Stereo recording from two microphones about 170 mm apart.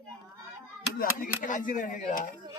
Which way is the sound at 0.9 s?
60° left (ahead or behind).